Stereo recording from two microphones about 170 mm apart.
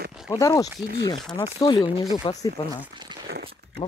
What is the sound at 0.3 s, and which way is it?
Speech, 20° left (ahead or behind).